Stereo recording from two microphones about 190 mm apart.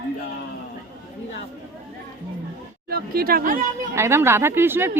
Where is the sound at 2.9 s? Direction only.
50° right (ahead or behind).